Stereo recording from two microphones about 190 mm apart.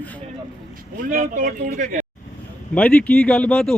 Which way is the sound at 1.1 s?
45° right (ahead or behind).